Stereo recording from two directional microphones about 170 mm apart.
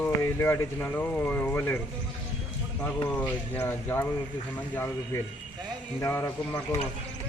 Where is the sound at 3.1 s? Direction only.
10° left (ahead or behind).